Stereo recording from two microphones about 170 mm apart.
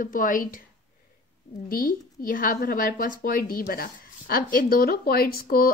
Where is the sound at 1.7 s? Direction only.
55° left (ahead or behind).